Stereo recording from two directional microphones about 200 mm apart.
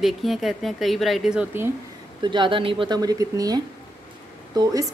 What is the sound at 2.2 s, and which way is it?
A woman's voice, 25° right (ahead or behind).